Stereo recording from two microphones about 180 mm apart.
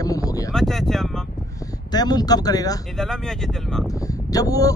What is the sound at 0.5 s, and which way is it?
Speech, centre (ahead or behind).